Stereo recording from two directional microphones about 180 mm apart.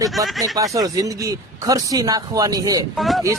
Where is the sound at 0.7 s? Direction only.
20° right (ahead or behind).